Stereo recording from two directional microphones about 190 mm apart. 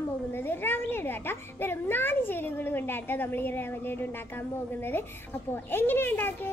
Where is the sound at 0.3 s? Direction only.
10° left (ahead or behind).